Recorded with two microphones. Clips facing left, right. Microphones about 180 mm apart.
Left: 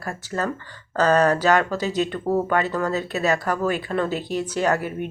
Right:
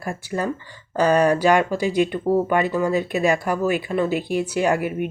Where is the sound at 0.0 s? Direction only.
15° right (ahead or behind).